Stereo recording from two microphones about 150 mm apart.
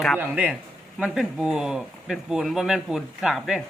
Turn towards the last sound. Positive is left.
turn(degrees=0)  # may be behind; listen again after turning